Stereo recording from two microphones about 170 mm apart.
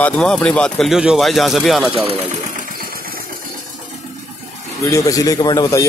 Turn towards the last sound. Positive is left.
turn(degrees=20)  # may be behind; listen again after turning